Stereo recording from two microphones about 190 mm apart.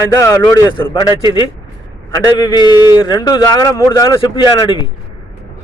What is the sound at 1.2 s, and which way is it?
Speech, 30° left (ahead or behind).